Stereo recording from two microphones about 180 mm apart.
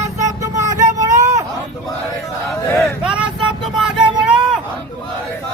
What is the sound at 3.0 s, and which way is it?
Vehicle, 5° right (ahead or behind).